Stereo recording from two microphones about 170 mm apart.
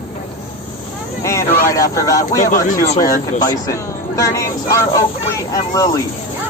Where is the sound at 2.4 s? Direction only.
50° left (ahead or behind).